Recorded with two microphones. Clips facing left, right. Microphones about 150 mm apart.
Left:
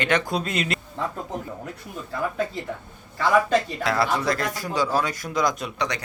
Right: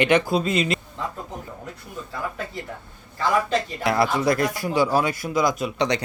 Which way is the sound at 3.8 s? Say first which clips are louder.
Right 3 dB; 15° right (ahead or behind).